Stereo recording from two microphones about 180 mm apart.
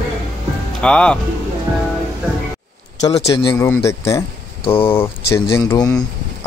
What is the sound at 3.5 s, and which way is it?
Speech, 15° left (ahead or behind).